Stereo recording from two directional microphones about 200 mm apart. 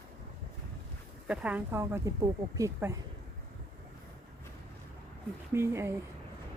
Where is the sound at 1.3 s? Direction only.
5° right (ahead or behind).